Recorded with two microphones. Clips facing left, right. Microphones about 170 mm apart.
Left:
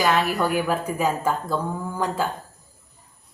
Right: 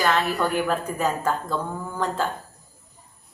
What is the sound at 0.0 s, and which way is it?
A woman's voice, 10° left (ahead or behind).